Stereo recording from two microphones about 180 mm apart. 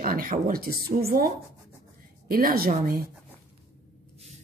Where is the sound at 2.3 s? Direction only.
55° right (ahead or behind).